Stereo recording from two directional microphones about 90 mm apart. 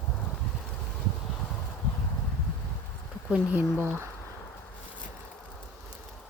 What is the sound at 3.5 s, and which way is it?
Speech, 30° right (ahead or behind).